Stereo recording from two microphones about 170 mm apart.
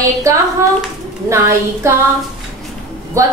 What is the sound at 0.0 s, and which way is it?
A woman's voice, 20° right (ahead or behind).